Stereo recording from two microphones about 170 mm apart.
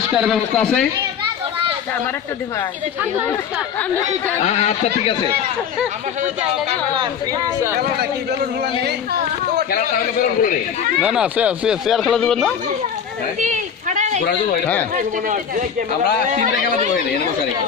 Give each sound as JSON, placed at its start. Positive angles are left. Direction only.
{"t": 0.2, "sound": "speech", "side_deg": 0}
{"t": 0.6, "sound": "a child's voice", "side_deg": 10}
{"t": 4.4, "sound": "a man's voice", "side_deg": 40}
{"t": 6.9, "sound": "speech", "side_deg": -25}
{"t": 7.8, "sound": "a man's voice", "side_deg": -70}
{"t": 11.0, "sound": "speech", "side_deg": -5}
{"t": 13.4, "sound": "a sound", "side_deg": -45}
{"t": 14.9, "sound": "speech", "side_deg": -50}